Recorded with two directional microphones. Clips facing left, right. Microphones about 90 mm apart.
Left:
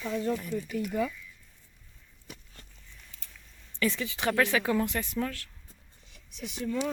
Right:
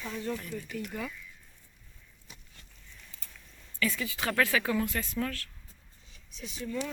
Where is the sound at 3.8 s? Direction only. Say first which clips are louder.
Left 2 dB; 30° left (ahead or behind).